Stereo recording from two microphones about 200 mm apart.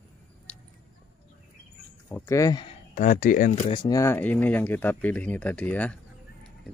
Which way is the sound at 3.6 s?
20° left (ahead or behind).